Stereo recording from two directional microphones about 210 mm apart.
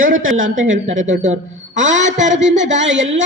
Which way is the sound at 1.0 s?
35° right (ahead or behind).